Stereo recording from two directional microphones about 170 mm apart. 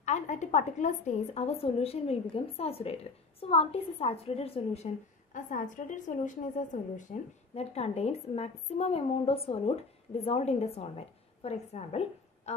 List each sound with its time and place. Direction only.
0.0 s a woman's voice: 45° left (ahead or behind)